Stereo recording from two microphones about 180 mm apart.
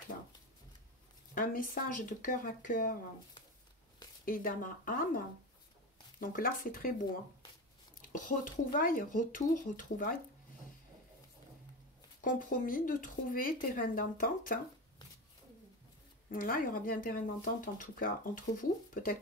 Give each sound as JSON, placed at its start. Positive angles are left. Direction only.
{"t": 1.3, "sound": "speech", "side_deg": 50}
{"t": 4.3, "sound": "speech", "side_deg": 50}
{"t": 8.1, "sound": "speech", "side_deg": 50}
{"t": 12.2, "sound": "speech", "side_deg": 50}
{"t": 16.3, "sound": "speech", "side_deg": 50}